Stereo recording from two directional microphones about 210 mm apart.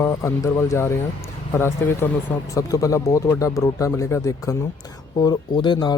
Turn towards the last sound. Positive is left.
turn(degrees=20)  # may be behind; listen again after turning